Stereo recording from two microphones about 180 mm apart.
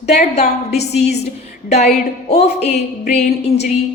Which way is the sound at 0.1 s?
40° left (ahead or behind).